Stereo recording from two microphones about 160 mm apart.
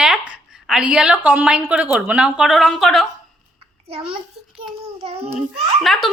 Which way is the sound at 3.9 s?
35° right (ahead or behind).